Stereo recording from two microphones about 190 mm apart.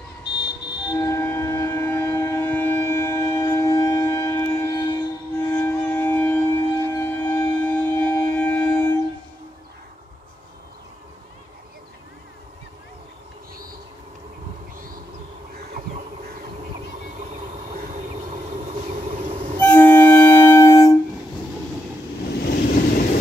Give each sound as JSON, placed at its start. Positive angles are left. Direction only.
{"t": 0.2, "sound": "vehicle", "side_deg": 60}
{"t": 0.7, "sound": "train", "side_deg": 20}
{"t": 5.5, "sound": "shofar", "side_deg": 10}
{"t": 19.6, "sound": "music", "side_deg": 10}